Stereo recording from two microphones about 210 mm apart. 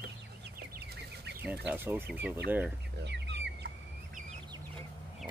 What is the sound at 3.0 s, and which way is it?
Chicken, 55° right (ahead or behind).